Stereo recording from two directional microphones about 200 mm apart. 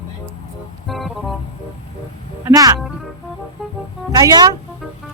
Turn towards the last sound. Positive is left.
turn(degrees=-20)  # may be behind; listen again after turning